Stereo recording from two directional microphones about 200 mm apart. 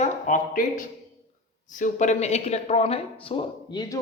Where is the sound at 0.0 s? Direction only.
40° left (ahead or behind).